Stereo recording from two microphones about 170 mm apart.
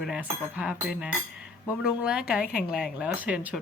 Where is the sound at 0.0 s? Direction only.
5° right (ahead or behind).